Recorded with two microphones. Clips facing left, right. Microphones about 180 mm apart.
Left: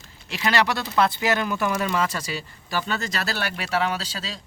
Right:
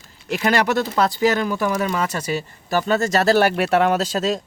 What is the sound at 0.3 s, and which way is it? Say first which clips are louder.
Speech: right 4 dB; 50° right (ahead or behind).